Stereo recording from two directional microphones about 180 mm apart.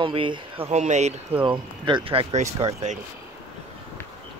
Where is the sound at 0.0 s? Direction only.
30° right (ahead or behind).